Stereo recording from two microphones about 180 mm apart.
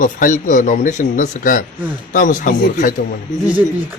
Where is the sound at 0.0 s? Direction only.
45° left (ahead or behind).